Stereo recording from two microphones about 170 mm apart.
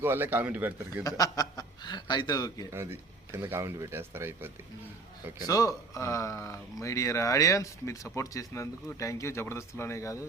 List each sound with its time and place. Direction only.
0.0 s speech: 10° right (ahead or behind)
1.0 s a man's voice: 20° left (ahead or behind)
2.7 s speech: 15° right (ahead or behind)
5.4 s a man's voice: 20° left (ahead or behind)